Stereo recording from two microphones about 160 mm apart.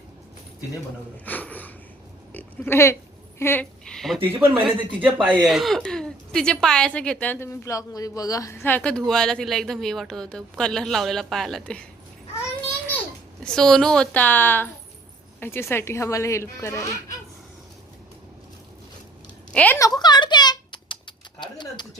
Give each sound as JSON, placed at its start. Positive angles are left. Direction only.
{"t": 1.1, "sound": "a sound", "side_deg": 10}
{"t": 2.3, "sound": "a woman's voice", "side_deg": 15}
{"t": 4.4, "sound": "speech", "side_deg": -10}
{"t": 5.3, "sound": "a woman's voice", "side_deg": 0}
{"t": 13.4, "sound": "a woman's voice", "side_deg": 5}
{"t": 19.5, "sound": "speech", "side_deg": 10}
{"t": 19.8, "sound": "a sound", "side_deg": 25}
{"t": 21.4, "sound": "a woman's voice", "side_deg": 30}